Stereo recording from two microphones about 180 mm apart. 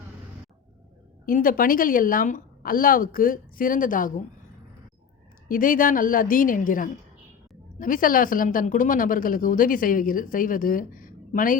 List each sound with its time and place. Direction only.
1.2 s speech: 50° left (ahead or behind)
5.5 s speech: 50° left (ahead or behind)